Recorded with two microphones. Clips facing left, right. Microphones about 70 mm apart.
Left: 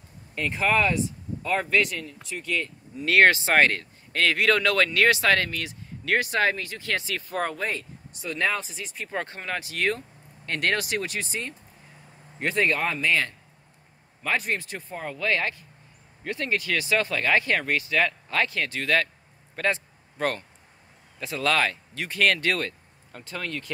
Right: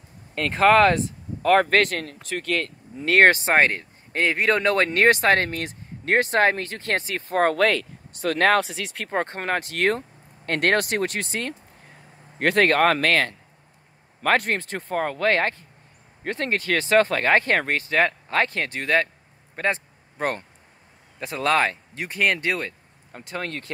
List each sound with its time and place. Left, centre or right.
0.3 s speech: right
3.0 s speech: right
7.4 s speech: right
9.1 s speech: right
19.5 s a sound: right
21.2 s speech: right
23.3 s speech: right